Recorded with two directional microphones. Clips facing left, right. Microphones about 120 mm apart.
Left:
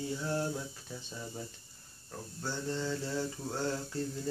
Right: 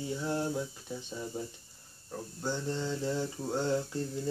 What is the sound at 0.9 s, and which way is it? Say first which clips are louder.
Speech: right 5 dB; 15° right (ahead or behind).